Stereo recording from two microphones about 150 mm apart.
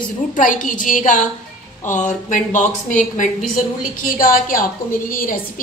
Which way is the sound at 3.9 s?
70° left (ahead or behind).